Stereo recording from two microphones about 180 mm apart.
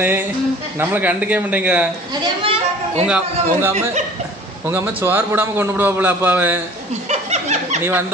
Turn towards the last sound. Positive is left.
turn(degrees=-40)  # may be behind; listen again after turning